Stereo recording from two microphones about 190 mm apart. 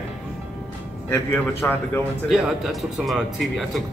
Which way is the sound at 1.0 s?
10° left (ahead or behind).